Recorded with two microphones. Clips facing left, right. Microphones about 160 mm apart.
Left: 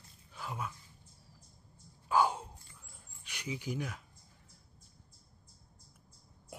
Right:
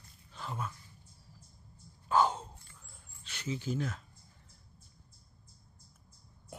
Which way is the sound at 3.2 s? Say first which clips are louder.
Right 3 dB; 15° left (ahead or behind).